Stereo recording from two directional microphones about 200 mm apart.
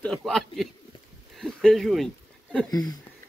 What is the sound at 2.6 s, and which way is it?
Speech, 20° left (ahead or behind).